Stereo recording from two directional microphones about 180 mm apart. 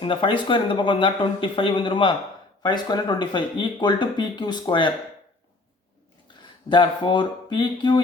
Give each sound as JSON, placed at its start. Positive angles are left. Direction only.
{"t": 0.0, "sound": "speech", "side_deg": 30}
{"t": 6.7, "sound": "speech", "side_deg": 25}